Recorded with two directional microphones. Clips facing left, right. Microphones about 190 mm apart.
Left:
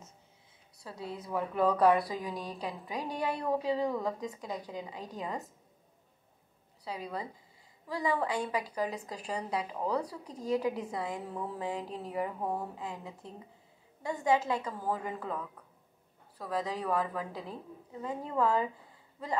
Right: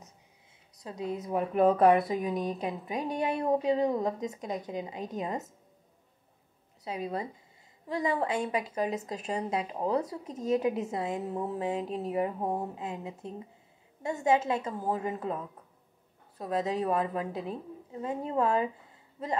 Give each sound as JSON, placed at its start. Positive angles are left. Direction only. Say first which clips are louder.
{"t": 0.7, "sound": "a woman's voice", "louder": "right 6 dB", "side_deg": -20}
{"t": 6.8, "sound": "a woman's voice", "louder": "right 4 dB", "side_deg": -20}